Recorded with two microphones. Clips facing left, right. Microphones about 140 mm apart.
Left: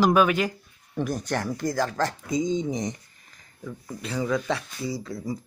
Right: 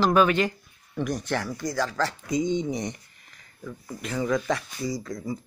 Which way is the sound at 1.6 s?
50° left (ahead or behind).